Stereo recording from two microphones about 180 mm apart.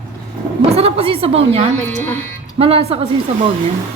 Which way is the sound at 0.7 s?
35° right (ahead or behind).